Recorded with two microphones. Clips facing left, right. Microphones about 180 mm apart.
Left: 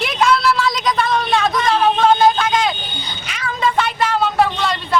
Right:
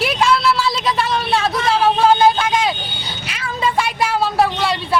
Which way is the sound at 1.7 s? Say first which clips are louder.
Right 1 dB; 5° right (ahead or behind).